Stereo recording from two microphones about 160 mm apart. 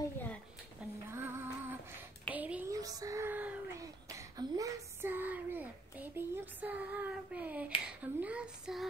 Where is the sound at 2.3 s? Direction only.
10° right (ahead or behind).